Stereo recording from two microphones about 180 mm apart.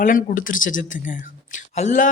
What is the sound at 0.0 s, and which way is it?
Speech, 50° left (ahead or behind).